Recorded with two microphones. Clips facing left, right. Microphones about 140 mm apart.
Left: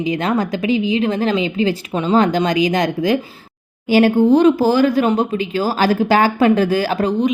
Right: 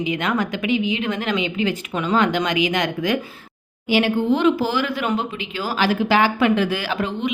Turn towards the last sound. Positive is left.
turn(degrees=40)  # may be behind; listen again after turning